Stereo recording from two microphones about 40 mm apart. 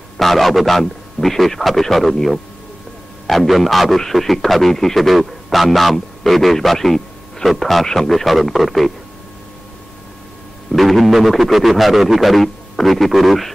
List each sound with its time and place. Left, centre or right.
0.2 s a man's voice: centre
7.8 s speech: centre
8.1 s a man's voice: centre
10.7 s a man's voice: centre